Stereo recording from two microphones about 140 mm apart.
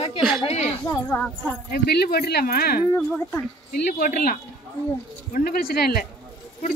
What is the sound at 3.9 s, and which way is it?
Speech, 90° left.